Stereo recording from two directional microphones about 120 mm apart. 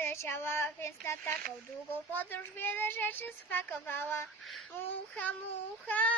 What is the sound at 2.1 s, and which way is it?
Child singing, 15° left (ahead or behind).